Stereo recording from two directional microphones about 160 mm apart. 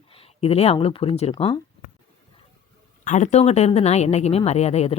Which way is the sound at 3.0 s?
45° left (ahead or behind).